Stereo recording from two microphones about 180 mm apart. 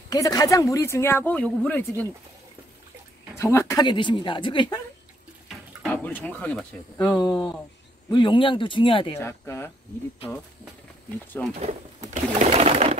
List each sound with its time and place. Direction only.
0.1 s speech: 20° left (ahead or behind)
3.3 s speech: 15° left (ahead or behind)
5.8 s speech: 5° left (ahead or behind)
8.1 s speech: 25° left (ahead or behind)
9.1 s speech: 15° left (ahead or behind)
11.6 s pigeon: 40° right (ahead or behind)